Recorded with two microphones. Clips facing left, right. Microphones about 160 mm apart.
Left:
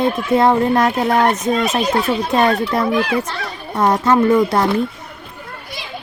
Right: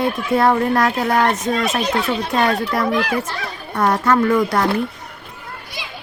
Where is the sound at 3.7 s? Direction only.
20° left (ahead or behind).